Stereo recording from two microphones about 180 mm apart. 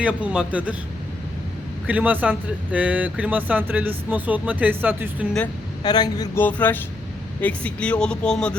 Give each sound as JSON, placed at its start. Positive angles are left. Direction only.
{"t": 0.0, "sound": "speech", "side_deg": -5}
{"t": 1.9, "sound": "speech", "side_deg": -10}
{"t": 5.8, "sound": "speech", "side_deg": 20}
{"t": 6.4, "sound": "speech", "side_deg": 10}